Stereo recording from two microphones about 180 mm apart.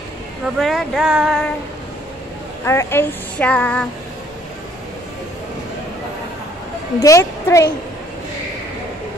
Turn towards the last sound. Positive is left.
turn(degrees=15)  # may be behind; listen again after turning